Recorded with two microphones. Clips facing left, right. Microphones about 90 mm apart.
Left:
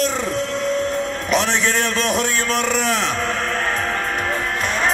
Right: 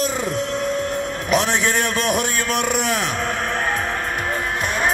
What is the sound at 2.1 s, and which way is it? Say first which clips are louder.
Speech: left 1 dB; 15° right (ahead or behind).